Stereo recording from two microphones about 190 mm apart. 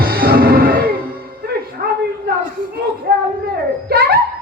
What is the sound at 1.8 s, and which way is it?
Speech, 45° right (ahead or behind).